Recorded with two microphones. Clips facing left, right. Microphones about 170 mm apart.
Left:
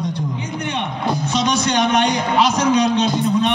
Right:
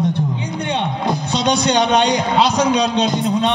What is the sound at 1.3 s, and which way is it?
A man's voice, 35° right (ahead or behind).